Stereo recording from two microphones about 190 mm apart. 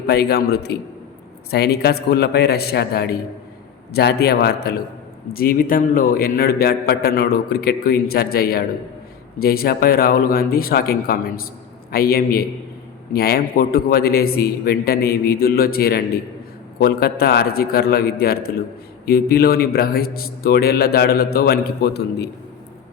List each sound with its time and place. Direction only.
0.1 s a man's voice: 55° left (ahead or behind)